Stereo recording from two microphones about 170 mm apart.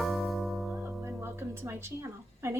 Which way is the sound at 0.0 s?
Centre (ahead or behind).